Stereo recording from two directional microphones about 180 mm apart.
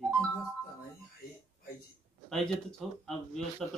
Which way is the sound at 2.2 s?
Centre (ahead or behind).